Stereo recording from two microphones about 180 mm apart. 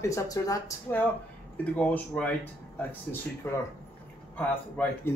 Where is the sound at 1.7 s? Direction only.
10° left (ahead or behind).